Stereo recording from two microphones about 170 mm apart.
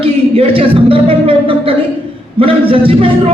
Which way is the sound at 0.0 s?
35° right (ahead or behind).